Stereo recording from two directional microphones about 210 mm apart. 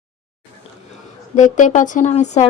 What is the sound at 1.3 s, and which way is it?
Speech, 35° left (ahead or behind).